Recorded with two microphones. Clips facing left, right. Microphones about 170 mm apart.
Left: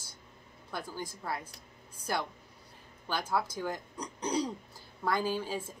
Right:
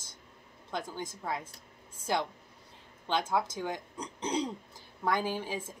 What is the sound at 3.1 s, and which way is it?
A woman's voice, 20° right (ahead or behind).